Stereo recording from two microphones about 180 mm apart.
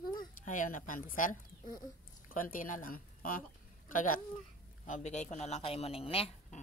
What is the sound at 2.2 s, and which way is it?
Speech, 50° left (ahead or behind).